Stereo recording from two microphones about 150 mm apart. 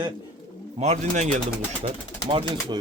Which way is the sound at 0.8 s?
50° right (ahead or behind).